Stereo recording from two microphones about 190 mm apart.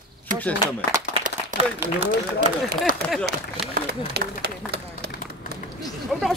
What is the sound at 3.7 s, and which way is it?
Speech, 60° right (ahead or behind).